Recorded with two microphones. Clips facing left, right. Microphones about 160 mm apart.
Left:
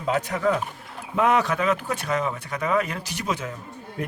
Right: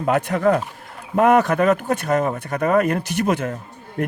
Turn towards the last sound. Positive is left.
turn(degrees=-55)  # may be behind; listen again after turning